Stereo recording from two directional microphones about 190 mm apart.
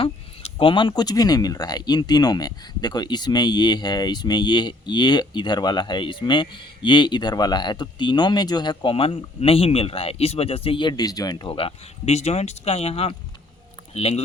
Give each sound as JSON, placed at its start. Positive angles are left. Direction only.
{"t": 0.6, "sound": "speech", "side_deg": 25}